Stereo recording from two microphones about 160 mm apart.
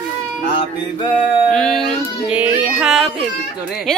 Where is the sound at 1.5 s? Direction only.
5° left (ahead or behind).